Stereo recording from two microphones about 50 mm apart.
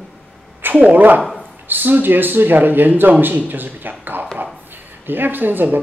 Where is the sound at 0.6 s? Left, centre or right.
Right.